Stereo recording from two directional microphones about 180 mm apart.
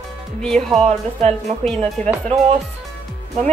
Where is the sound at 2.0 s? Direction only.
45° right (ahead or behind).